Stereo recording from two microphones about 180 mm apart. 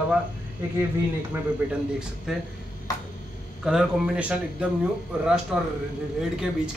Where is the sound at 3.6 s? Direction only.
5° right (ahead or behind).